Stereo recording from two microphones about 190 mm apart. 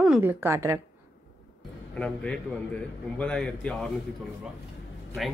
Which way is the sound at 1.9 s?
5° left (ahead or behind).